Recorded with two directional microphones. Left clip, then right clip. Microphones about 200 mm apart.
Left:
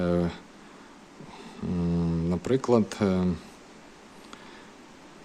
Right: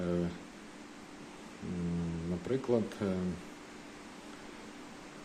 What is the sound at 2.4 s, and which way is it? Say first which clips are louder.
Speech: left 8 dB; 45° left (ahead or behind).